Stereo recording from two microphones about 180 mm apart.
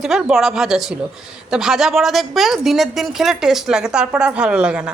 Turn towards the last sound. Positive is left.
turn(degrees=-5)  # may be behind; listen again after turning